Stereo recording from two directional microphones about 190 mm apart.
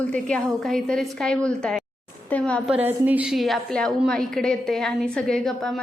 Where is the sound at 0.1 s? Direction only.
5° left (ahead or behind).